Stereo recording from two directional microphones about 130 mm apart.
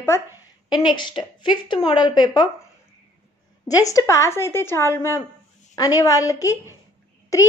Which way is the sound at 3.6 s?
25° left (ahead or behind).